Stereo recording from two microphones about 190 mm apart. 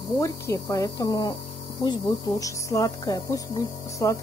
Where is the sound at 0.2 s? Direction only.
15° left (ahead or behind).